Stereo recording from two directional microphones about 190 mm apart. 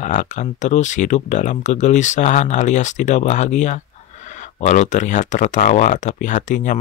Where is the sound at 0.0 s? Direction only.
40° left (ahead or behind).